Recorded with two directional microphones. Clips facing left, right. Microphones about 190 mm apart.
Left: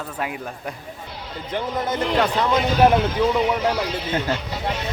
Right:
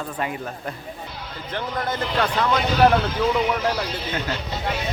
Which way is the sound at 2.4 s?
20° left (ahead or behind).